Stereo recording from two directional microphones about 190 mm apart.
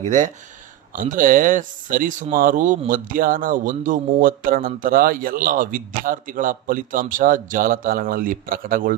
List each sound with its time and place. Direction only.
0.0 s speech: 40° right (ahead or behind)